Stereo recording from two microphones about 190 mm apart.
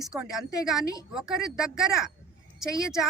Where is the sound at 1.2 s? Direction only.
5° right (ahead or behind).